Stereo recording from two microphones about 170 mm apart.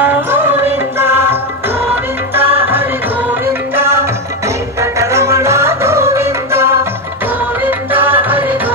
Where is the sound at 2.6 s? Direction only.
10° right (ahead or behind).